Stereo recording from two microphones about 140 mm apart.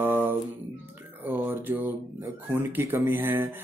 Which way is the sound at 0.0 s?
15° right (ahead or behind).